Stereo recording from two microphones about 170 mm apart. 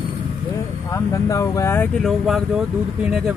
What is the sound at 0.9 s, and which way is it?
Speech, 20° left (ahead or behind).